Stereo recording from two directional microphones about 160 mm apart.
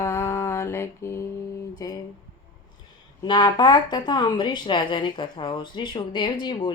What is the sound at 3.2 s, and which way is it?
Speech, 25° left (ahead or behind).